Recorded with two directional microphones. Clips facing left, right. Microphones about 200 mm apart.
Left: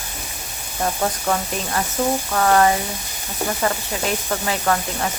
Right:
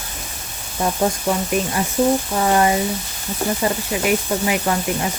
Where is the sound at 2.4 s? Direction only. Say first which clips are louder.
Left 4 dB; 20° right (ahead or behind).